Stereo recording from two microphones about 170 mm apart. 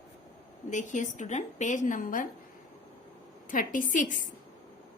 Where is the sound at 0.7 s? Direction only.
45° left (ahead or behind).